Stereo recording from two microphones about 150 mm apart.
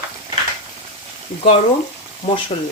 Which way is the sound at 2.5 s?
45° left (ahead or behind).